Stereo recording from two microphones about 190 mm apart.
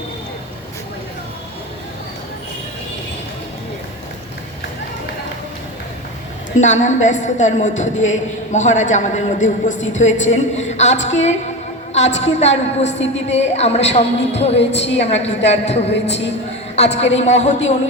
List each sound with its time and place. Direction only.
6.6 s a man's voice: 40° left (ahead or behind)
14.5 s a woman's voice: 70° left (ahead or behind)
14.9 s a man's voice: 35° left (ahead or behind)
15.9 s a man's voice: 65° left (ahead or behind)
16.7 s a man's voice: 35° left (ahead or behind)